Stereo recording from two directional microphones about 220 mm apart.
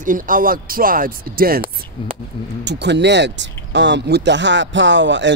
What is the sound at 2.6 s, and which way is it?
Speech, 50° right (ahead or behind).